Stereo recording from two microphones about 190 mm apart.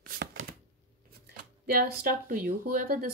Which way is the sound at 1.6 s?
50° right (ahead or behind).